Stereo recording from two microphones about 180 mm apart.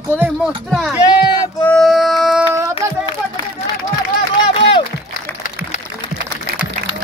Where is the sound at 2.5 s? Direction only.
15° right (ahead or behind).